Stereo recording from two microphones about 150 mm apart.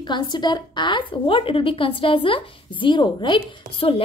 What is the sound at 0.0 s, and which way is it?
A woman's voice, 30° left (ahead or behind).